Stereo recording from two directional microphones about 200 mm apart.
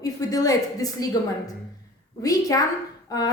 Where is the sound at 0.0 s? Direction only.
20° left (ahead or behind).